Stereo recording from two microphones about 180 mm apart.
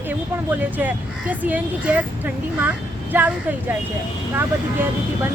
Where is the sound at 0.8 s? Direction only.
10° right (ahead or behind).